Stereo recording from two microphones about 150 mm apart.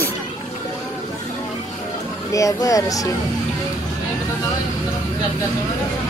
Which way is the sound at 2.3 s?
20° left (ahead or behind).